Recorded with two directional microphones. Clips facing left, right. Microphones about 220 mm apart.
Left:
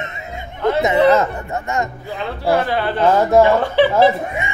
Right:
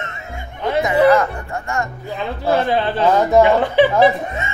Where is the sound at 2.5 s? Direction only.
20° right (ahead or behind).